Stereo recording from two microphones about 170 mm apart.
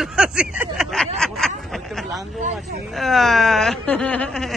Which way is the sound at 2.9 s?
Centre (ahead or behind).